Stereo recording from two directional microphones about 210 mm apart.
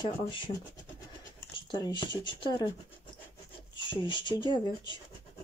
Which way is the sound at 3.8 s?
25° left (ahead or behind).